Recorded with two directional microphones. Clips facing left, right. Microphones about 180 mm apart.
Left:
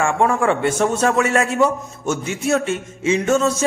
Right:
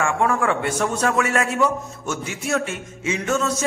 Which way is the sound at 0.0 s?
25° left (ahead or behind).